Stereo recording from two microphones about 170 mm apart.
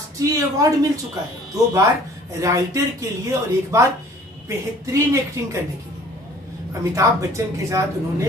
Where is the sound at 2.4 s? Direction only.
20° right (ahead or behind).